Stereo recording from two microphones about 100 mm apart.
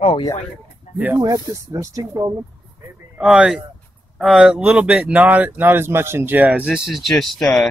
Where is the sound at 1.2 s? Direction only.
35° right (ahead or behind).